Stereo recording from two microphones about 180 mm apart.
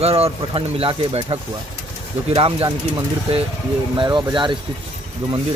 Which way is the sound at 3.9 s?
25° right (ahead or behind).